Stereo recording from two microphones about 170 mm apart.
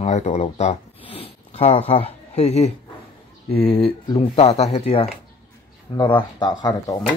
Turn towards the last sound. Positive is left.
turn(degrees=25)  # may be behind; listen again after turning